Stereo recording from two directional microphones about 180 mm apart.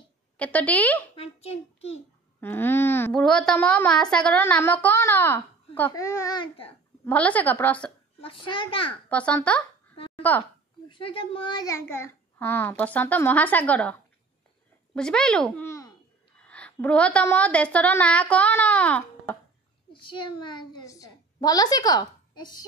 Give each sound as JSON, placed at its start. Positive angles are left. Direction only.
{"t": 0.4, "sound": "a child's voice", "side_deg": 10}
{"t": 1.1, "sound": "a child's voice", "side_deg": 35}
{"t": 2.4, "sound": "a child's voice", "side_deg": 10}
{"t": 7.1, "sound": "a child's voice", "side_deg": 10}
{"t": 8.2, "sound": "a child's voice", "side_deg": 30}
{"t": 9.1, "sound": "a child's voice", "side_deg": 5}
{"t": 9.9, "sound": "a sound", "side_deg": 30}
{"t": 10.9, "sound": "a child's voice", "side_deg": 30}
{"t": 15.0, "sound": "a woman's voice", "side_deg": 5}
{"t": 19.9, "sound": "a child's voice", "side_deg": 25}